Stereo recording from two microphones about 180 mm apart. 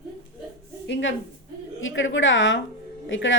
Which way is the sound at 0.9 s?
80° left.